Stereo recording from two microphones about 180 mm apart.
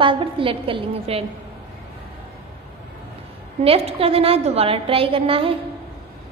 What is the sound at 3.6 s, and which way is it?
A woman's voice, 35° right (ahead or behind).